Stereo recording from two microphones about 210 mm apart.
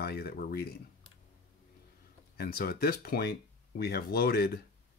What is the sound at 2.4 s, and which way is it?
Speech, 45° left (ahead or behind).